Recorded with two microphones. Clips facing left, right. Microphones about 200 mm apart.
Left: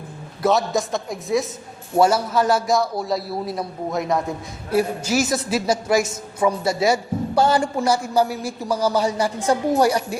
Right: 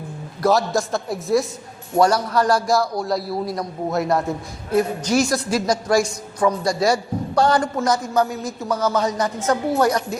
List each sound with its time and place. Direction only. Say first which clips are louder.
0.4 s a woman's voice: right 1 dB; centre (ahead or behind)
8.7 s a man's voice: left 1 dB; 30° left (ahead or behind)
9.0 s a man's voice: even; 10° left (ahead or behind)